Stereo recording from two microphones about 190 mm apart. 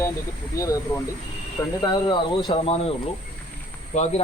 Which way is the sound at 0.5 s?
15° left (ahead or behind).